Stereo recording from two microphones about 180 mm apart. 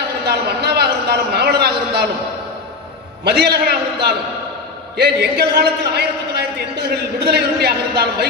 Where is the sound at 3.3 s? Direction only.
65° right (ahead or behind).